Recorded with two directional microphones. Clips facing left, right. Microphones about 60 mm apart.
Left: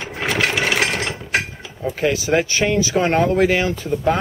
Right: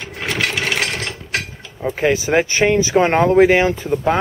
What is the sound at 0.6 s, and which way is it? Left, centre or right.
Ratchet, centre.